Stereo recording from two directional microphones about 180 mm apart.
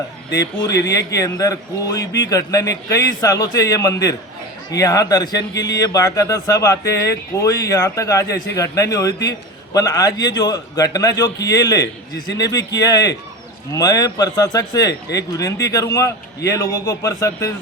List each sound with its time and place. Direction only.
0.7 s speech: 70° left (ahead or behind)
0.9 s a man's voice: 20° left (ahead or behind)